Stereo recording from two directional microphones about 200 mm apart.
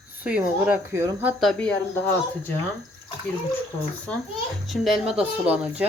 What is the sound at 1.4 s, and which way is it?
Speech, 5° left (ahead or behind).